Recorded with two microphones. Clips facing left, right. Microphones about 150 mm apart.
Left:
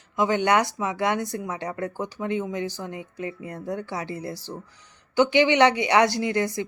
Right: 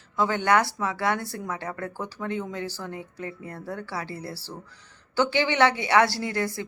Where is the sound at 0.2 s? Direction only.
15° left (ahead or behind).